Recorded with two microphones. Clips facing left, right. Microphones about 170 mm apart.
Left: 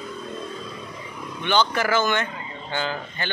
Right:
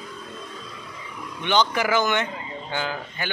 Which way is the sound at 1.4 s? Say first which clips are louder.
Even; 15° right (ahead or behind).